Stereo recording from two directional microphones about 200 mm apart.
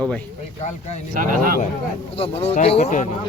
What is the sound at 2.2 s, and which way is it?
Speech, 30° left (ahead or behind).